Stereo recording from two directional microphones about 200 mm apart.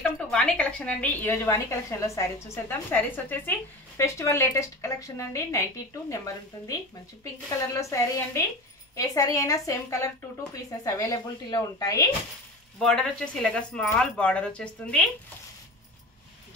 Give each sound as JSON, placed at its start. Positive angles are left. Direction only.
{"t": 0.3, "sound": "a woman's voice", "side_deg": 5}
{"t": 12.7, "sound": "speech", "side_deg": 5}